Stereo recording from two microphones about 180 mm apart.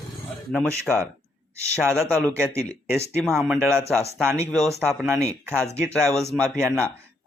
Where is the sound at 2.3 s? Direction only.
15° right (ahead or behind).